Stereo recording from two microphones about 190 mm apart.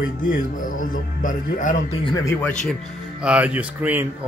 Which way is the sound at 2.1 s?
15° left (ahead or behind).